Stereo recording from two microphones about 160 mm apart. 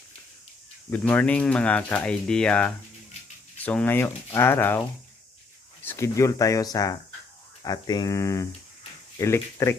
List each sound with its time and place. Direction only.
0.9 s speech: 10° left (ahead or behind)
5.8 s speech: 15° left (ahead or behind)